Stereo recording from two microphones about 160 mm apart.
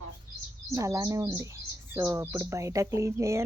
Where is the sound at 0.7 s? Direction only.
20° right (ahead or behind).